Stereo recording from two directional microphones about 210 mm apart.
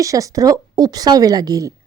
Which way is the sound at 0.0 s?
15° right (ahead or behind).